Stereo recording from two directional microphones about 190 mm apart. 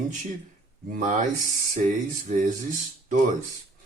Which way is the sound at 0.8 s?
45° right (ahead or behind).